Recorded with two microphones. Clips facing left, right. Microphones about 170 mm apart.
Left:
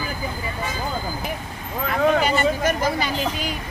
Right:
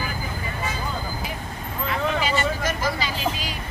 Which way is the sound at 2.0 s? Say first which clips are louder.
Left 6 dB; 50° left (ahead or behind).